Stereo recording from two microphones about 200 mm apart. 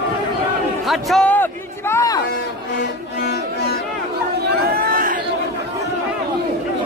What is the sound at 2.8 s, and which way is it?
Music, 55° left (ahead or behind).